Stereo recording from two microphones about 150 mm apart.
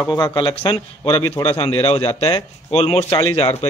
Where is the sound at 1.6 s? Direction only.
40° left (ahead or behind).